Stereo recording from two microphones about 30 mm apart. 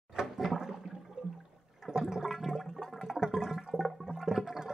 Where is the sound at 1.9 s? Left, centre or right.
Centre.